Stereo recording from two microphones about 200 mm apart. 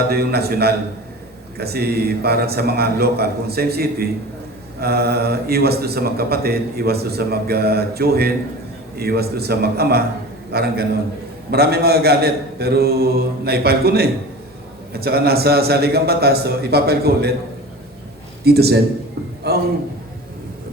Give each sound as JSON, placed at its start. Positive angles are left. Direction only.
{"t": 0.1, "sound": "a man's voice", "side_deg": -50}
{"t": 18.4, "sound": "a man's voice", "side_deg": -55}